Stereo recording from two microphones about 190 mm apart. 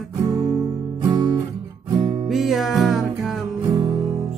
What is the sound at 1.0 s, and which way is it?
Guitar, 20° right (ahead or behind).